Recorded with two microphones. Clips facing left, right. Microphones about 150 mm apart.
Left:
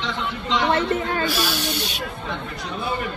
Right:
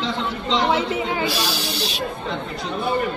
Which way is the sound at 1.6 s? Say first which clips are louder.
Even; 35° right (ahead or behind).